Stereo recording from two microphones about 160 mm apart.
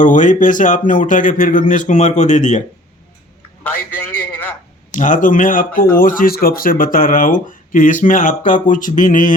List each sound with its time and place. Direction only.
0.0 s speech: 50° left (ahead or behind)
3.6 s a sound: 10° left (ahead or behind)
4.9 s speech: 55° left (ahead or behind)